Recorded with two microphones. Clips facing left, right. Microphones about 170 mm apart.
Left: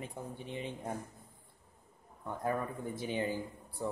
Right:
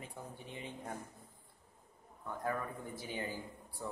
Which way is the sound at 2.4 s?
20° left (ahead or behind).